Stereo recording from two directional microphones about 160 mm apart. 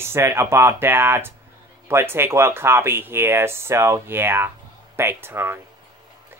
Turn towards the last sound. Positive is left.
turn(degrees=-15)  # may be behind; listen again after turning